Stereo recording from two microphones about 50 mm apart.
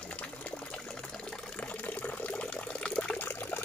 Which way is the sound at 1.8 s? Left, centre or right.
Left.